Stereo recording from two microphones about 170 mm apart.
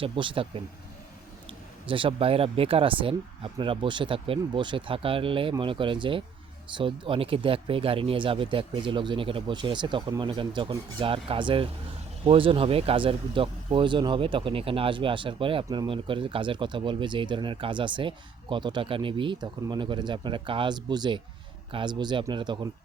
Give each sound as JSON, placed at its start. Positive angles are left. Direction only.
{"t": 0.0, "sound": "speech", "side_deg": -30}